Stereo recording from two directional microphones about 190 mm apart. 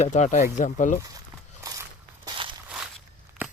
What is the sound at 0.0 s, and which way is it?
Speech, 40° left (ahead or behind).